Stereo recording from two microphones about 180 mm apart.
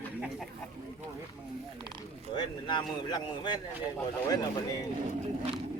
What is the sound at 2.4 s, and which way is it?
A man's voice, 25° left (ahead or behind).